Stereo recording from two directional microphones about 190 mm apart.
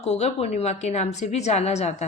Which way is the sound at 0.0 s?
35° left (ahead or behind).